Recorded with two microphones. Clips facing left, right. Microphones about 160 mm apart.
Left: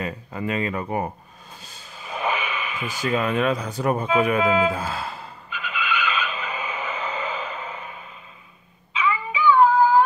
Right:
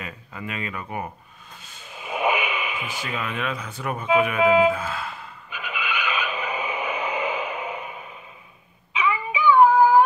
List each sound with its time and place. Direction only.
0.0 s speech: 35° left (ahead or behind)
1.6 s a sound: 35° left (ahead or behind)
2.0 s radio: 15° right (ahead or behind)
3.0 s speech: 40° left (ahead or behind)
4.7 s gasp: 35° left (ahead or behind)
5.5 s vehicle: 15° right (ahead or behind)
8.9 s synthetic singing: 15° right (ahead or behind)